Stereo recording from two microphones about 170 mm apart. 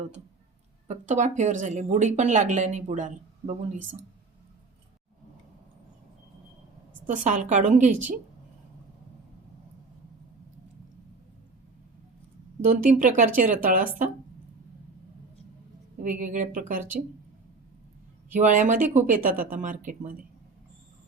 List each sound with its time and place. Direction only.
0.9 s speech: 45° right (ahead or behind)
7.1 s speech: 45° right (ahead or behind)
12.6 s speech: 50° right (ahead or behind)
16.0 s speech: 50° right (ahead or behind)
18.3 s speech: 50° right (ahead or behind)